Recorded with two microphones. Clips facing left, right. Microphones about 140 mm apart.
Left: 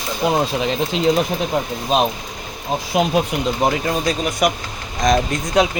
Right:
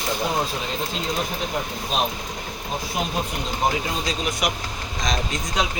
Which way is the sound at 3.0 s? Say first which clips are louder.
Left 10 dB; 75° left (ahead or behind).